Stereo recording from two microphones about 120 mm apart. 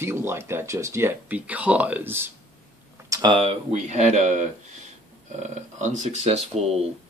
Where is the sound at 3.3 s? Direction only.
65° right (ahead or behind); by 4.5 s 80° right.